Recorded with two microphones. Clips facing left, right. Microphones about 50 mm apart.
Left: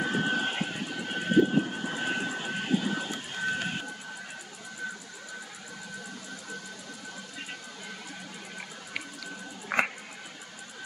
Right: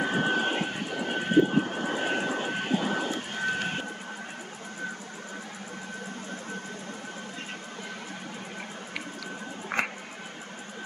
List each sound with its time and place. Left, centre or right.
0.0 s vehicle: centre
9.7 s music: centre